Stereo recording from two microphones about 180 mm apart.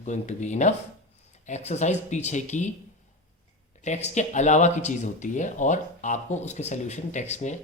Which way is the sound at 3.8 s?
40° left (ahead or behind).